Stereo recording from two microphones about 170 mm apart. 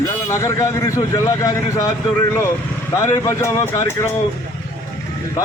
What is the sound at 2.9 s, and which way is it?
A man's voice, 15° left (ahead or behind).